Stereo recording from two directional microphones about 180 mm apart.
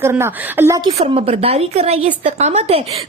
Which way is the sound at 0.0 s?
15° right (ahead or behind).